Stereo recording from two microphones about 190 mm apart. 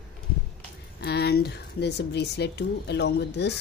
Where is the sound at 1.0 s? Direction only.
60° left (ahead or behind).